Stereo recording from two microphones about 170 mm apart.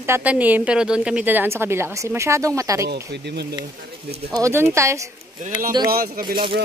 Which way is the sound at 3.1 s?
80° right.